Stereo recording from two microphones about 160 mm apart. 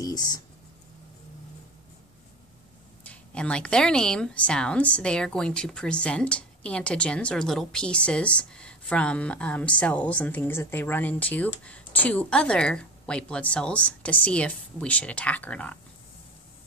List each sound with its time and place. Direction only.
0.0 s speech: 25° left (ahead or behind)
3.0 s speech: 10° left (ahead or behind)